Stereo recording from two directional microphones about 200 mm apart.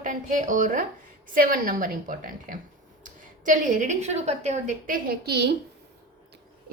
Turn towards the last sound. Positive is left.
turn(degrees=-55)  # may be behind; listen again after turning